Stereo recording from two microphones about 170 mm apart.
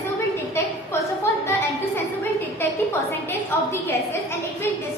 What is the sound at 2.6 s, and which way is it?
A woman's voice, 15° left (ahead or behind).